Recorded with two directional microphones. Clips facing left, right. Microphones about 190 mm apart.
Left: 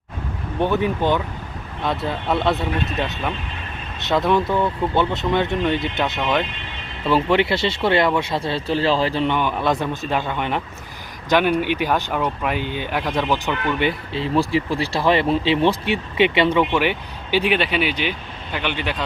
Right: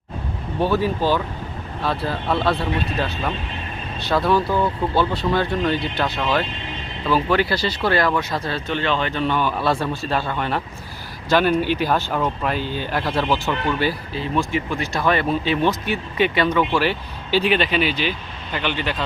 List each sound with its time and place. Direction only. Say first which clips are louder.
0.6 s speech: even; 20° left (ahead or behind)
4.0 s speech: even; 20° left (ahead or behind)
4.4 s speech: even; 5° right (ahead or behind)
4.9 s speech: even; 20° left (ahead or behind)
9.2 s a man's voice: even; 20° left (ahead or behind)